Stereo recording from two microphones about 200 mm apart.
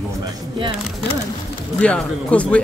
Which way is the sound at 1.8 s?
5° left (ahead or behind).